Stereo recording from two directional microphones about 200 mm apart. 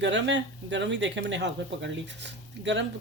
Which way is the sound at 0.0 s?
65° right (ahead or behind).